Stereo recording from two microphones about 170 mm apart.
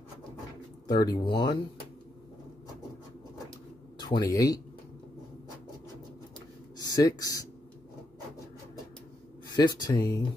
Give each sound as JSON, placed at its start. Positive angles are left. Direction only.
{"t": 0.8, "sound": "speech", "side_deg": 20}
{"t": 4.0, "sound": "speech", "side_deg": 20}
{"t": 6.8, "sound": "speech", "side_deg": 20}
{"t": 9.6, "sound": "speech", "side_deg": 25}